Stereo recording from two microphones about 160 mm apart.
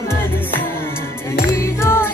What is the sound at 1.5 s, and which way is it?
Music, 15° left (ahead or behind).